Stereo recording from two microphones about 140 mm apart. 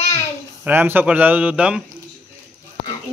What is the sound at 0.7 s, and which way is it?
A man's voice, 15° right (ahead or behind).